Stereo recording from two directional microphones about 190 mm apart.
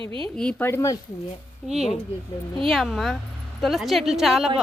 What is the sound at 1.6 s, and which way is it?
A woman's voice, centre (ahead or behind).